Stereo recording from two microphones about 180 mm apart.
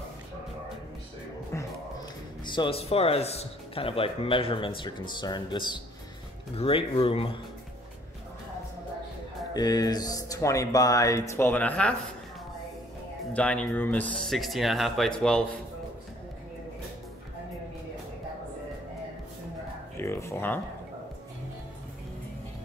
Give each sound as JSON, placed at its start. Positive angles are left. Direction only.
{"t": 1.5, "sound": "music", "side_deg": 15}
{"t": 2.4, "sound": "speech", "side_deg": 25}
{"t": 9.5, "sound": "speech", "side_deg": 20}
{"t": 13.3, "sound": "speech", "side_deg": 5}
{"t": 20.0, "sound": "a sound", "side_deg": 15}